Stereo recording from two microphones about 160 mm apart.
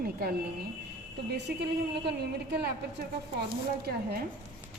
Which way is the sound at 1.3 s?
90° right.